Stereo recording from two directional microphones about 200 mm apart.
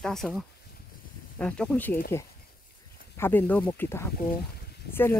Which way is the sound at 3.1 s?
10° left (ahead or behind).